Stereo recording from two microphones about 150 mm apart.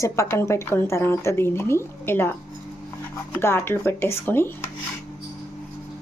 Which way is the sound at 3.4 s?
15° left (ahead or behind).